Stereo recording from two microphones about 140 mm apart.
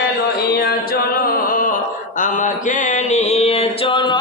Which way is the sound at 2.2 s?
65° left (ahead or behind).